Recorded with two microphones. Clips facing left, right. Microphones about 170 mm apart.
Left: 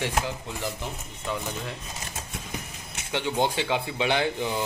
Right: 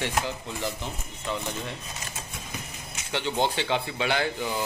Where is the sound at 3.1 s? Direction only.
10° left (ahead or behind).